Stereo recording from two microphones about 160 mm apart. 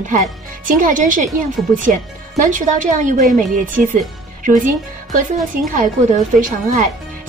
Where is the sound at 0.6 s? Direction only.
55° right (ahead or behind).